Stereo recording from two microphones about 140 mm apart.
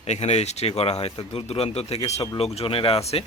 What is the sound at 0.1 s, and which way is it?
Speech, 50° left (ahead or behind).